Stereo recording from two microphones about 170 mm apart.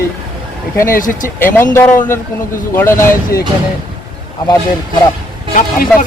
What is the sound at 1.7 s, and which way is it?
Speech, 10° left (ahead or behind).